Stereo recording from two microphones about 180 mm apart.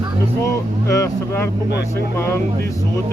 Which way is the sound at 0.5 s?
20° left (ahead or behind).